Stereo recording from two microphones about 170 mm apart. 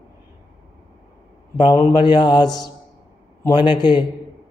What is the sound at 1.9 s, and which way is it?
A man's voice, 25° left (ahead or behind).